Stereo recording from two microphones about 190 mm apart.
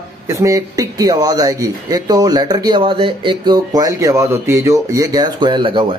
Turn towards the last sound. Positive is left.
turn(degrees=-25)  # may be behind; listen again after turning